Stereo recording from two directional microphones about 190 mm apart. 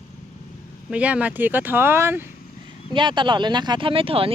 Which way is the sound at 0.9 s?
5° right (ahead or behind).